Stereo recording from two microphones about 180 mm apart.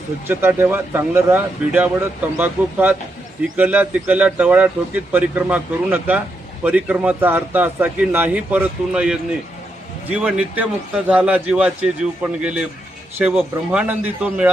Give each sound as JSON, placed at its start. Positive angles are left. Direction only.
{"t": 0.3, "sound": "speech", "side_deg": -10}